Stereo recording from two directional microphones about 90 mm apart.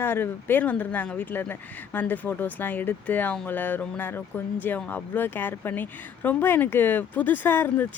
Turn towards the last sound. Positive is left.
turn(degrees=25)  # may be behind; listen again after turning